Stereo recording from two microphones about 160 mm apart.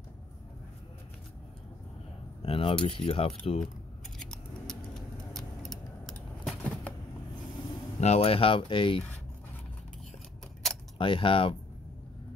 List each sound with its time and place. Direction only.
2.4 s speech: 35° left (ahead or behind)
4.2 s scissors: 5° left (ahead or behind)
5.3 s a sound: centre (ahead or behind)
8.0 s speech: 40° left (ahead or behind)
10.6 s keys jangling: centre (ahead or behind)
11.0 s speech: 35° left (ahead or behind)